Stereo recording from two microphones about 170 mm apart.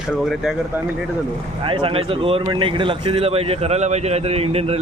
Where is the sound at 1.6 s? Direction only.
30° right (ahead or behind).